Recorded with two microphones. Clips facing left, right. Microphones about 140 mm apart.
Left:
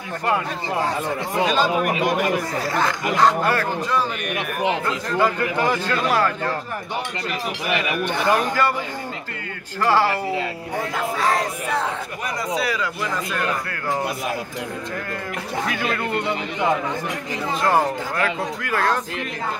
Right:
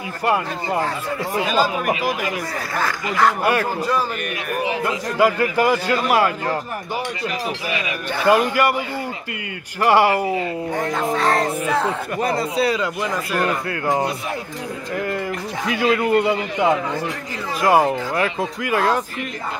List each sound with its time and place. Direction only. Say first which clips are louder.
0.2 s a man's voice: right 3 dB; 10° right (ahead or behind)
8.2 s a man's voice: right 5 dB; 10° right (ahead or behind)
9.8 s a man's voice: right 4 dB; 15° right (ahead or behind)
10.8 s speech: right 2 dB; centre (ahead or behind)
12.2 s speech: right 6 dB; 30° right (ahead or behind)
15.6 s a man's voice: right 7 dB; 10° right (ahead or behind)
17.6 s a man's voice: right 4 dB; 10° right (ahead or behind)